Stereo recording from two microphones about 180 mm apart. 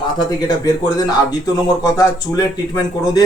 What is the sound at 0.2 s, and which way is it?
Speech, 20° left (ahead or behind).